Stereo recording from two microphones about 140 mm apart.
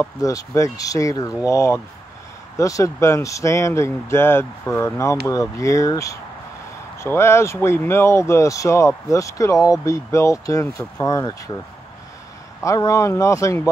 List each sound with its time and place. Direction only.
0.0 s speech: 25° left (ahead or behind)
12.6 s speech: 25° left (ahead or behind)